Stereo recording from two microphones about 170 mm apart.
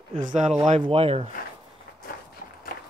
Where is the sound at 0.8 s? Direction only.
35° right (ahead or behind).